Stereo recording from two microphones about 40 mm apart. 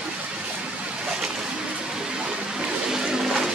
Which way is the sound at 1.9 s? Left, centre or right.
Centre.